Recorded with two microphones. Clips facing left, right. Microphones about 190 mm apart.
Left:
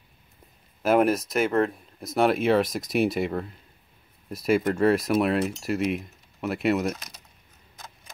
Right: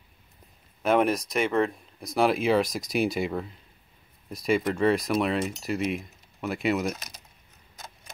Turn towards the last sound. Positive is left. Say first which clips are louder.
# left 2 dB
turn(degrees=0)  # may be behind; listen again after turning